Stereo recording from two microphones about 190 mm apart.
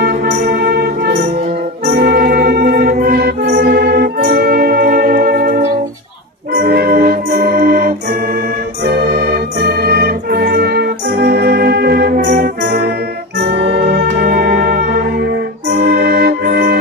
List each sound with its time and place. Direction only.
0.0 s music: 55° right (ahead or behind)
8.8 s organ: 55° right (ahead or behind)
13.4 s music: 65° right (ahead or behind)